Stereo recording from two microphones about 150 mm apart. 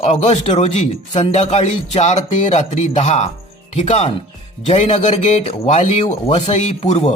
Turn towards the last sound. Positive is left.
turn(degrees=50)  # may be behind; listen again after turning